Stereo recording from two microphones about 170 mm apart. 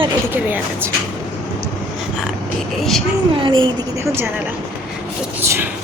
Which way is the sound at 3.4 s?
30° right (ahead or behind).